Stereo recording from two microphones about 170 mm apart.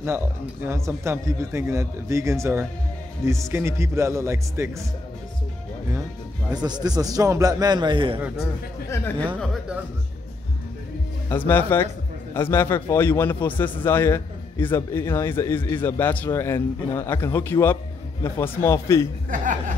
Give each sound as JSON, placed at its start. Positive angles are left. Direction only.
{"t": 0.7, "sound": "speech", "side_deg": -15}
{"t": 6.5, "sound": "a man's voice", "side_deg": -25}
{"t": 9.4, "sound": "speech", "side_deg": 0}
{"t": 11.2, "sound": "a man's voice", "side_deg": 10}
{"t": 19.3, "sound": "speech", "side_deg": -50}